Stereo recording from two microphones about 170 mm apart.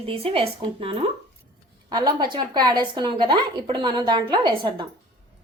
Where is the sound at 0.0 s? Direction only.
35° right (ahead or behind).